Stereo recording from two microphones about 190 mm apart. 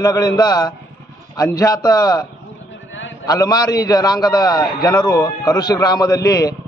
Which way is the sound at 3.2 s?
20° left (ahead or behind).